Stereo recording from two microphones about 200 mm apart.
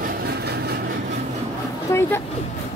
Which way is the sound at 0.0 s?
50° right (ahead or behind).